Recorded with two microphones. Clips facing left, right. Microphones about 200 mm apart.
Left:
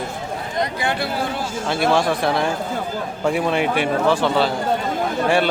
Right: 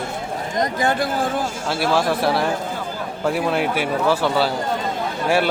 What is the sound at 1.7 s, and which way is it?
Speech, 5° right (ahead or behind).